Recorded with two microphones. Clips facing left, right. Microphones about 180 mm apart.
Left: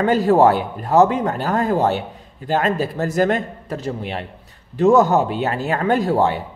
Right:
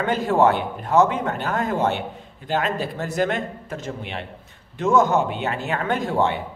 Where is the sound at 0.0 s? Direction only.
40° left (ahead or behind).